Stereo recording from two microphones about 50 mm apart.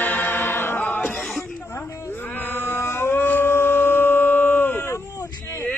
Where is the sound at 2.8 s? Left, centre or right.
Left.